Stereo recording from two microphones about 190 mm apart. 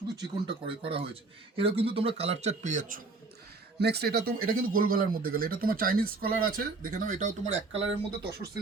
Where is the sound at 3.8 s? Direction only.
60° right (ahead or behind); by 7.8 s 40° right (ahead or behind).